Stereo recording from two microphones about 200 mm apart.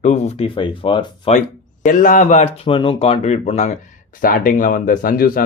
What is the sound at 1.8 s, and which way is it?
Speech, 40° left (ahead or behind).